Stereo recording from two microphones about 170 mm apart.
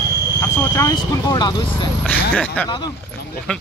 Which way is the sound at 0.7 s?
20° left (ahead or behind).